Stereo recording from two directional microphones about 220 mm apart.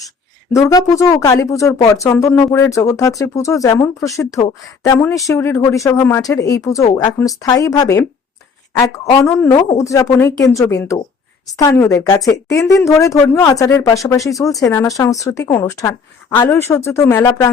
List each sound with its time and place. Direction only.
0.5 s speech: 15° left (ahead or behind)